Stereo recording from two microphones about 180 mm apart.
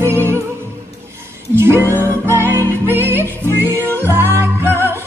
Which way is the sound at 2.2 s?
15° right (ahead or behind).